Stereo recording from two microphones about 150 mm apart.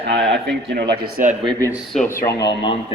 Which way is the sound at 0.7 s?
90° right.